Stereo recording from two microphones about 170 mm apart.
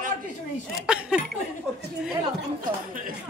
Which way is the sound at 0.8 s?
5° right (ahead or behind).